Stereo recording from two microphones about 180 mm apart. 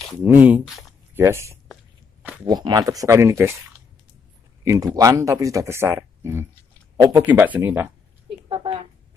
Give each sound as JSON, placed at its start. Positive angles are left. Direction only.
{"t": 0.2, "sound": "speech", "side_deg": -10}
{"t": 1.1, "sound": "speech", "side_deg": -15}
{"t": 4.6, "sound": "speech", "side_deg": -20}
{"t": 8.5, "sound": "a woman's voice", "side_deg": -30}